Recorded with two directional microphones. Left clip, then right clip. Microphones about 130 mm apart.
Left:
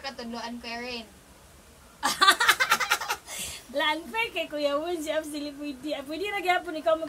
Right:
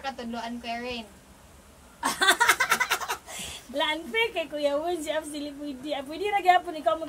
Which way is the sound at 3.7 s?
20° left (ahead or behind).